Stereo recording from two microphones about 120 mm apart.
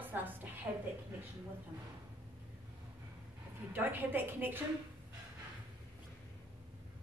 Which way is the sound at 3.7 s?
15° right (ahead or behind).